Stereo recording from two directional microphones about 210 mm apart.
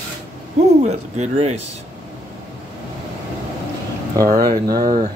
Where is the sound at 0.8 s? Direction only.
30° right (ahead or behind).